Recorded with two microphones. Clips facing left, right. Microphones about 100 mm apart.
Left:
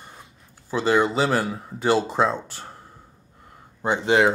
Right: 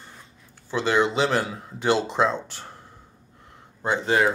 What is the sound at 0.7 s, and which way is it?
Speech, 5° left (ahead or behind).